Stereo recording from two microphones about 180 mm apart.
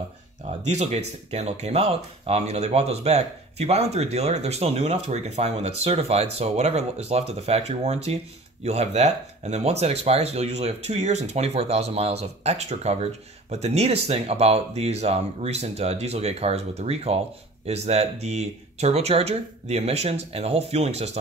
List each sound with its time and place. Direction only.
0.7 s speech: 40° right (ahead or behind)